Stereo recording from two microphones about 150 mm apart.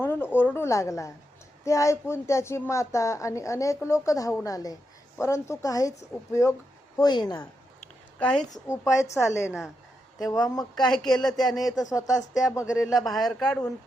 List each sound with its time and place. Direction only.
0.0 s speech: 15° left (ahead or behind)
8.2 s a woman's voice: 5° left (ahead or behind)
8.4 s speech: 20° left (ahead or behind)
10.2 s speech: centre (ahead or behind)
10.5 s speech: 25° left (ahead or behind)
10.8 s speech: 5° left (ahead or behind)
11.9 s speech: 20° left (ahead or behind)
13.1 s speech: centre (ahead or behind)